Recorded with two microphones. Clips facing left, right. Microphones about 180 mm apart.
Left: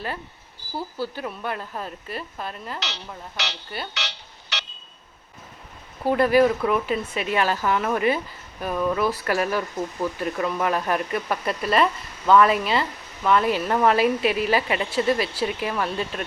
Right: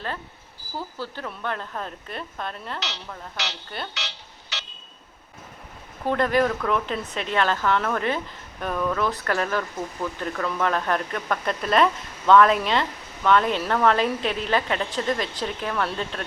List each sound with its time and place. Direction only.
0.8 s speech: 10° left (ahead or behind)
3.3 s speech: 70° left (ahead or behind)
3.9 s a sound: 70° left (ahead or behind)
6.1 s speech: 10° left (ahead or behind)